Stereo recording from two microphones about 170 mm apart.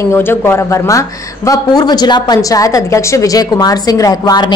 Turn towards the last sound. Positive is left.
turn(degrees=20)  # may be behind; listen again after turning